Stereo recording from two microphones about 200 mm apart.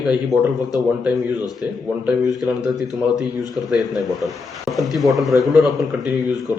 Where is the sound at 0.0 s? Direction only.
5° right (ahead or behind).